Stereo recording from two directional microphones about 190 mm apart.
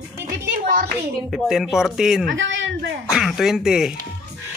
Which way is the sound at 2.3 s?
80° right.